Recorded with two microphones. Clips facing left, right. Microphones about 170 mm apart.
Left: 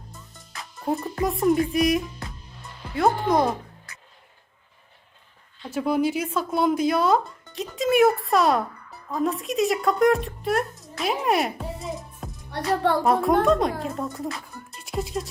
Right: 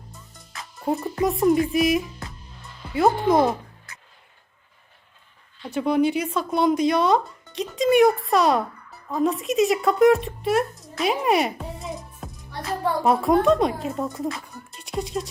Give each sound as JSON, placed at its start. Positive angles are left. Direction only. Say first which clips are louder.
{"t": 0.5, "sound": "speech", "louder": "right 1 dB", "side_deg": 0}
{"t": 5.6, "sound": "speech", "louder": "right 2 dB", "side_deg": 5}
{"t": 12.7, "sound": "music", "louder": "left 3 dB", "side_deg": 70}
{"t": 13.1, "sound": "speech", "louder": "right 3 dB", "side_deg": 0}